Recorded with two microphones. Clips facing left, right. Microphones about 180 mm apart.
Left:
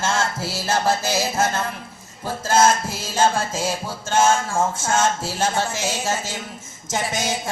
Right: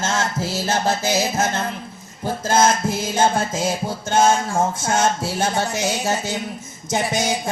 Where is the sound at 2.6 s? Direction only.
55° right (ahead or behind).